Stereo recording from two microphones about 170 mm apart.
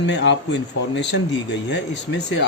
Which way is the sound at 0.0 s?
90° left.